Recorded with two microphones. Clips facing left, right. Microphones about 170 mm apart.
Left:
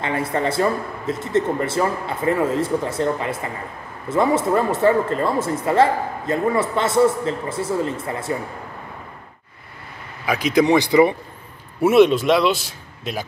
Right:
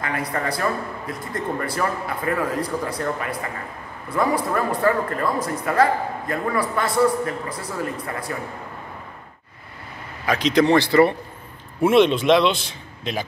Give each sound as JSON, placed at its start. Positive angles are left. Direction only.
{"t": 0.0, "sound": "speech", "side_deg": 25}
{"t": 10.2, "sound": "a man's voice", "side_deg": 10}